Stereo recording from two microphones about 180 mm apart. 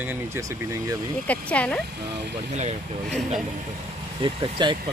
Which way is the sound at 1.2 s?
5° left (ahead or behind).